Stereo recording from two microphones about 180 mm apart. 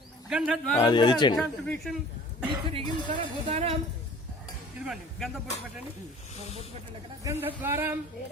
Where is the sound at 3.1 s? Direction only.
30° right (ahead or behind).